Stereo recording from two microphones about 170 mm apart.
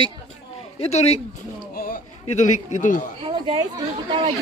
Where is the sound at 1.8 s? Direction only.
50° left (ahead or behind).